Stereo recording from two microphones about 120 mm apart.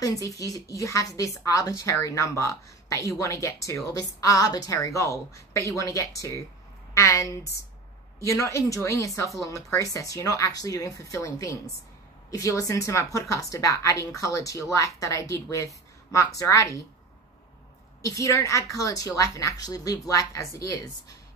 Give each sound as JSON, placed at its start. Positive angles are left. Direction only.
{"t": 0.0, "sound": "a woman's voice", "side_deg": 30}
{"t": 18.0, "sound": "a woman's voice", "side_deg": 25}